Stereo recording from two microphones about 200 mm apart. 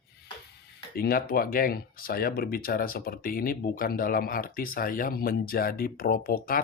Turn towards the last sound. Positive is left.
turn(degrees=45)  # may be behind; listen again after turning